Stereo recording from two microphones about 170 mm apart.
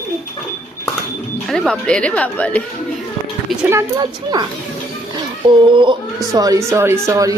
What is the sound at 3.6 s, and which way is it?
Speech, 20° right (ahead or behind).